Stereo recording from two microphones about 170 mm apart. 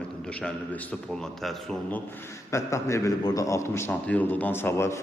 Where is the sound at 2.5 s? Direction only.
15° left (ahead or behind).